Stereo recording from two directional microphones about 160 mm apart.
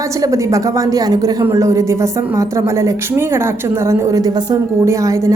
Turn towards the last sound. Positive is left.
turn(degrees=-20)  # may be behind; listen again after turning